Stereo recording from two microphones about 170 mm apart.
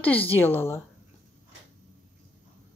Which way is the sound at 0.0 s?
10° left (ahead or behind).